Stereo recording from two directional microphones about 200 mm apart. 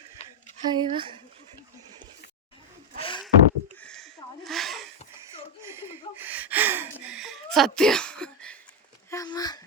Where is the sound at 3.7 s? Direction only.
5° left (ahead or behind).